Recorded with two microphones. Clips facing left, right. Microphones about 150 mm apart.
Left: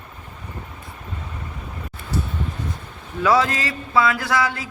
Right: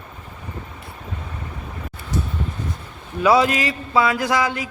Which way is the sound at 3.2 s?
15° right (ahead or behind).